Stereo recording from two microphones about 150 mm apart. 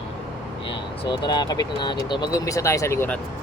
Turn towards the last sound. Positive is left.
turn(degrees=15)  # may be behind; listen again after turning